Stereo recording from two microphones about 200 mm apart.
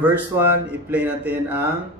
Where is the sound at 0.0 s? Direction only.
10° right (ahead or behind).